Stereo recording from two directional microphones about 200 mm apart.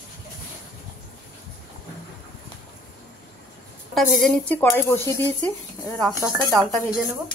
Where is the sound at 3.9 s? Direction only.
Centre (ahead or behind).